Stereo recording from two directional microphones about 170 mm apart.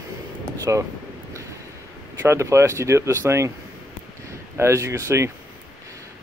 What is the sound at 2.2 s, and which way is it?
Speech, 15° right (ahead or behind).